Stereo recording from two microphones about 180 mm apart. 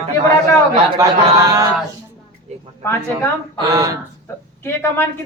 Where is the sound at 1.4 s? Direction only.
20° right (ahead or behind).